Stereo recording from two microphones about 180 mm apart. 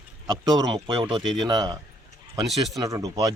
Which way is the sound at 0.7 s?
25° right (ahead or behind).